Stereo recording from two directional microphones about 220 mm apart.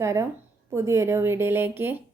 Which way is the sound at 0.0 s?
15° right (ahead or behind).